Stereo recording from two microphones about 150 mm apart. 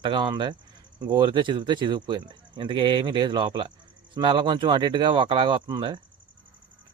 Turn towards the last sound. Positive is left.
turn(degrees=-30)  # may be behind; listen again after turning